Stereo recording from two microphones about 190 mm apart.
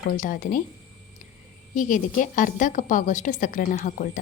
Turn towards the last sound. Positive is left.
turn(degrees=40)  # may be behind; listen again after turning